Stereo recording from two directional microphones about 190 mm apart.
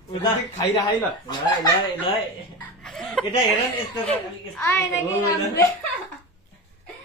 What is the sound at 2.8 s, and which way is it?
Speech, centre (ahead or behind).